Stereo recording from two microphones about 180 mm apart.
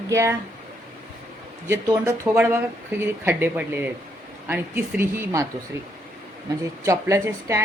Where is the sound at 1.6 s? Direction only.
15° right (ahead or behind).